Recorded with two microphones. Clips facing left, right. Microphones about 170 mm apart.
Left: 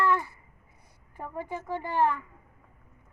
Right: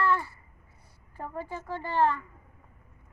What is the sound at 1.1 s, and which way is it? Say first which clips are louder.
A child's voice: left 1 dB; 20° left (ahead or behind).